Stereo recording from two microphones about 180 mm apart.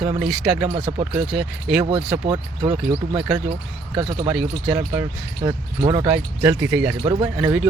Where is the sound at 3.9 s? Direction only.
25° right (ahead or behind).